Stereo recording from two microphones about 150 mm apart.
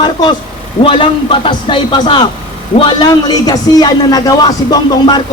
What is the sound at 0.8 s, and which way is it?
A man's voice, 35° left (ahead or behind).